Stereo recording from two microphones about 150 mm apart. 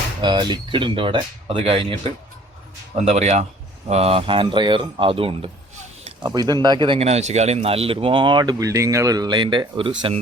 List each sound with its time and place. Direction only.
0.2 s a man's voice: 30° right (ahead or behind)
6.2 s a man's voice: 25° right (ahead or behind)